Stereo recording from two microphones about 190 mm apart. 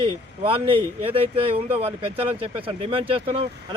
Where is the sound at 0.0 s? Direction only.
30° right (ahead or behind).